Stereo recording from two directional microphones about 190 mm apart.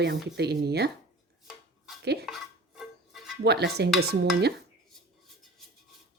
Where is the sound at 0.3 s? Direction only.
60° right (ahead or behind).